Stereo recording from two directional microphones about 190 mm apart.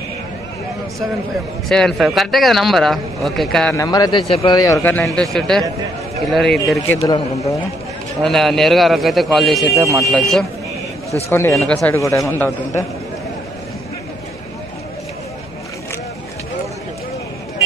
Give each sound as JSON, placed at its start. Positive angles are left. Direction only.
{"t": 1.7, "sound": "speech", "side_deg": 0}
{"t": 3.7, "sound": "speech", "side_deg": 20}
{"t": 4.3, "sound": "speech", "side_deg": 30}
{"t": 4.6, "sound": "a man's voice", "side_deg": 15}
{"t": 4.9, "sound": "speech", "side_deg": 5}
{"t": 8.2, "sound": "speech", "side_deg": 0}
{"t": 11.2, "sound": "a man's voice", "side_deg": 15}
{"t": 12.0, "sound": "a man's voice", "side_deg": 15}